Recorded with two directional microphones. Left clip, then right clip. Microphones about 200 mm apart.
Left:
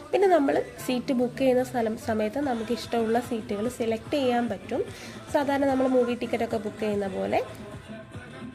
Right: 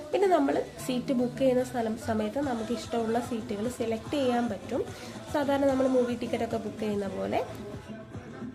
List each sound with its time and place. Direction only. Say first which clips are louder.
0.1 s a woman's voice: left 3 dB; 15° left (ahead or behind)